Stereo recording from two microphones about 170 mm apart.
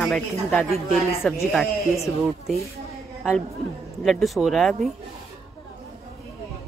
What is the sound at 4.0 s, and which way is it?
Speech, centre (ahead or behind).